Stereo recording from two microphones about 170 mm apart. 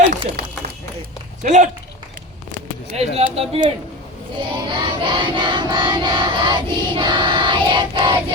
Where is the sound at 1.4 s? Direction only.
45° right (ahead or behind).